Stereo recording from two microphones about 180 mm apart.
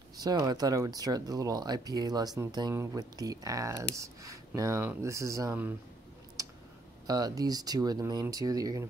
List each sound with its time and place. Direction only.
0.2 s speech: 20° right (ahead or behind)
7.1 s speech: 20° right (ahead or behind)